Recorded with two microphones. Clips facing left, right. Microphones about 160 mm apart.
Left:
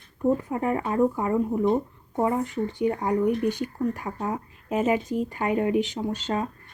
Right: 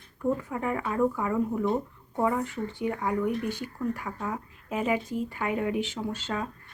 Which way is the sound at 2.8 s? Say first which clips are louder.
Left 5 dB; 35° left (ahead or behind).